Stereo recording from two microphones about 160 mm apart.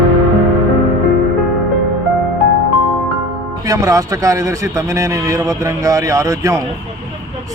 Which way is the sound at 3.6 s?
20° right (ahead or behind).